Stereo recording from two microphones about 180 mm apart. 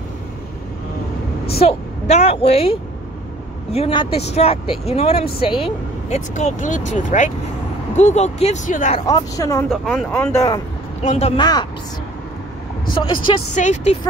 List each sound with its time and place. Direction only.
1.6 s speech: 35° left (ahead or behind)
9.0 s speech: 20° left (ahead or behind)
9.7 s speech: centre (ahead or behind)
10.1 s speech: 15° left (ahead or behind)
11.0 s speech: 35° left (ahead or behind)
11.3 s speech: 25° left (ahead or behind)
12.9 s speech: 25° left (ahead or behind)
13.6 s speech: 40° left (ahead or behind)